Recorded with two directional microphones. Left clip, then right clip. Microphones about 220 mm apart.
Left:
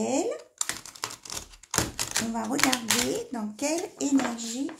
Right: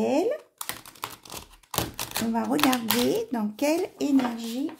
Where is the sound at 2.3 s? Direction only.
45° right (ahead or behind).